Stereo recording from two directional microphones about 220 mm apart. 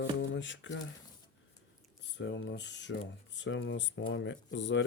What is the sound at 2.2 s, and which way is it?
Speech, 55° left (ahead or behind).